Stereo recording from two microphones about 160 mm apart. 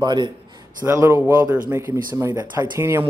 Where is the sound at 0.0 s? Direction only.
25° right (ahead or behind).